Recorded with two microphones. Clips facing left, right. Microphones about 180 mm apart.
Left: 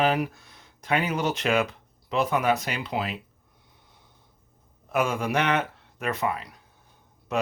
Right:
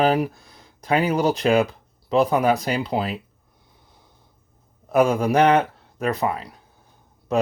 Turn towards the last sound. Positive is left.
turn(degrees=-35)  # may be behind; listen again after turning